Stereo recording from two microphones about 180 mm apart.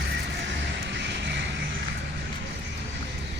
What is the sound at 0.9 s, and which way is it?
Music, 80° right.